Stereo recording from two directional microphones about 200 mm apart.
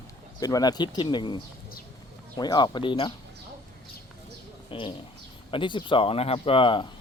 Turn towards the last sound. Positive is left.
turn(degrees=25)  # may be behind; listen again after turning